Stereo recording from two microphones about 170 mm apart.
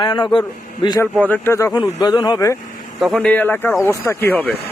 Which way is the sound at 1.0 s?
10° left (ahead or behind).